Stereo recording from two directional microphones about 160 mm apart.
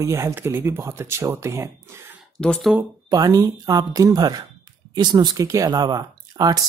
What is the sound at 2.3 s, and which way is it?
Speech, 5° left (ahead or behind).